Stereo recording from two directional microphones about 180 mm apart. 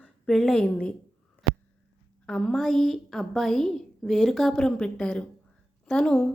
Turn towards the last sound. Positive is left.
turn(degrees=5)  # may be behind; listen again after turning